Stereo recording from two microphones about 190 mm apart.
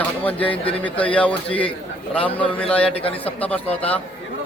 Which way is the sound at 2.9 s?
30° left (ahead or behind).